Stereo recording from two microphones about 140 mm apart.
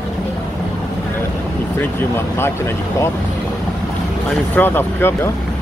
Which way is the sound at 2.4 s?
20° left (ahead or behind).